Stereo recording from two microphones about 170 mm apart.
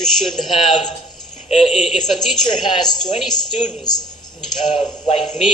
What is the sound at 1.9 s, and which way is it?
Speech, centre (ahead or behind).